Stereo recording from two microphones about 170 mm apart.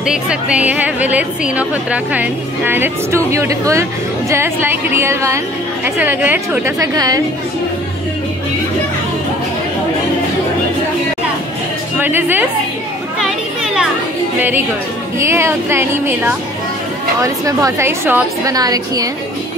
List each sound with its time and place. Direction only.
0.0 s a woman's voice: 5° right (ahead or behind); by 7.2 s 20° right (ahead or behind)
12.0 s a woman's voice: 10° right (ahead or behind)
15.1 s a woman's voice: 15° right (ahead or behind)